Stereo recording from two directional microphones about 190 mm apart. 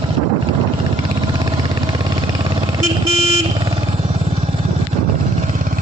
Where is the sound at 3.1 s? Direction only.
30° right (ahead or behind).